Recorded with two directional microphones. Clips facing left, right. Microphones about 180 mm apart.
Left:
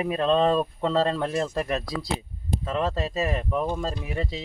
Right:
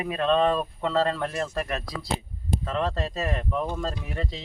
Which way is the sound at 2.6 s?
10° left (ahead or behind).